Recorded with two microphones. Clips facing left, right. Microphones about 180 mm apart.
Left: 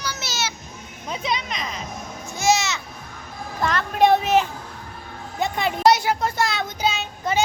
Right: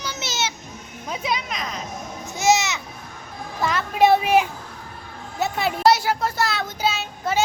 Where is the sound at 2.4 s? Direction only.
20° right (ahead or behind).